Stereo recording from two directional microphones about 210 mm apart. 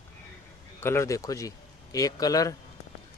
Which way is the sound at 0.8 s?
15° left (ahead or behind).